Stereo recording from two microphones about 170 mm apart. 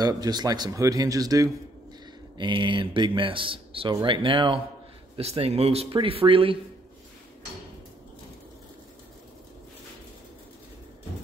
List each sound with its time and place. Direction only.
0.0 s speech: 25° right (ahead or behind)